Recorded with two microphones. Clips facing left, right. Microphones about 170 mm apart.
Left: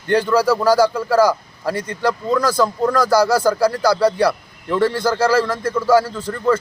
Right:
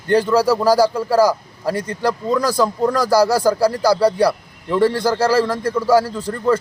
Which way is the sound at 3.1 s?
35° right (ahead or behind).